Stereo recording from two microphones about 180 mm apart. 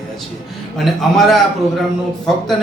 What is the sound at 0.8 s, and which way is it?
Speech, centre (ahead or behind).